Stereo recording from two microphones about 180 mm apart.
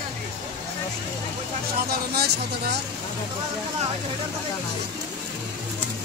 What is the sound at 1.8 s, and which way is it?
Speech, 60° right (ahead or behind).